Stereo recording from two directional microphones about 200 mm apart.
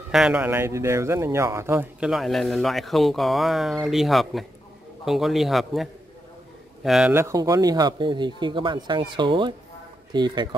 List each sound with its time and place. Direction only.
0.1 s speech: 5° right (ahead or behind); by 10.5 s 20° right (ahead or behind)